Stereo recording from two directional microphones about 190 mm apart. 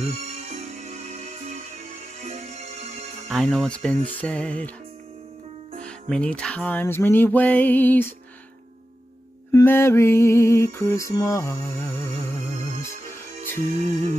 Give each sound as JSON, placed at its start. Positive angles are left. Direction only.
{"t": 0.0, "sound": "music", "side_deg": -35}
{"t": 3.3, "sound": "speech", "side_deg": 0}
{"t": 5.8, "sound": "music", "side_deg": 5}
{"t": 9.5, "sound": "music", "side_deg": 15}
{"t": 12.5, "sound": "music", "side_deg": -40}